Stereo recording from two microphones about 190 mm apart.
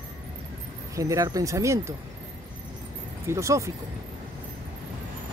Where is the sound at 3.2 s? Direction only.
15° right (ahead or behind).